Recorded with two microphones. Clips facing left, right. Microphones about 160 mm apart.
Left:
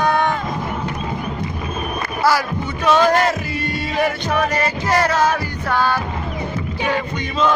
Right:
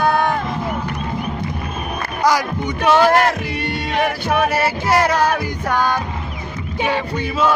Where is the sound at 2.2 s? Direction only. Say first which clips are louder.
Right 1 dB; 15° right (ahead or behind).